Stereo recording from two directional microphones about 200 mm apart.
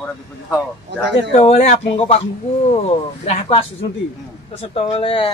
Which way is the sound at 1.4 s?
35° left (ahead or behind).